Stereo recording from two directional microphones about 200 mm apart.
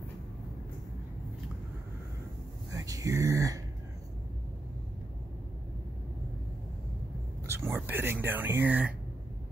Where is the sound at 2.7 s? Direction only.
15° right (ahead or behind).